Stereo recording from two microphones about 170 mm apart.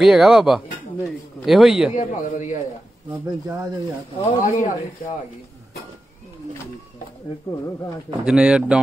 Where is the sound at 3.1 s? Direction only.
10° right (ahead or behind).